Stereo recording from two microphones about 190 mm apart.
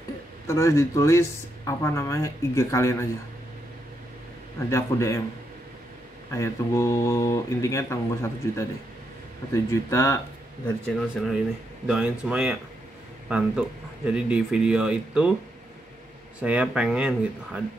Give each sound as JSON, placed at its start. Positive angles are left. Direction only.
{"t": 0.5, "sound": "speech", "side_deg": 15}
{"t": 4.6, "sound": "speech", "side_deg": 15}
{"t": 6.3, "sound": "speech", "side_deg": 15}
{"t": 11.0, "sound": "speech", "side_deg": 0}
{"t": 16.3, "sound": "speech", "side_deg": -5}